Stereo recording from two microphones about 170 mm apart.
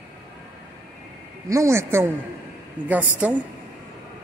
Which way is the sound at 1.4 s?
15° right (ahead or behind).